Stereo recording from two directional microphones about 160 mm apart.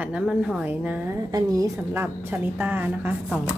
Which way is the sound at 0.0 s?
5° right (ahead or behind).